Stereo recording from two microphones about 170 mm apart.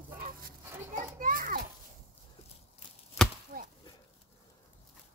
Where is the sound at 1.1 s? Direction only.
55° right (ahead or behind).